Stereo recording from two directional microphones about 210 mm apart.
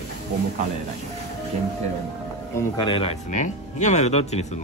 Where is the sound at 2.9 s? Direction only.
30° left (ahead or behind).